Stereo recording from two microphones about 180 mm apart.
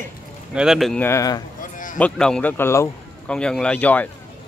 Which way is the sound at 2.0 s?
5° left (ahead or behind).